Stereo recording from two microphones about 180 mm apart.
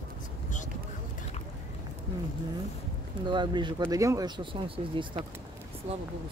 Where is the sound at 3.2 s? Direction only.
25° right (ahead or behind).